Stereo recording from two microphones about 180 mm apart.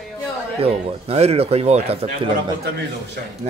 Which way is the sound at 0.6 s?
35° right (ahead or behind).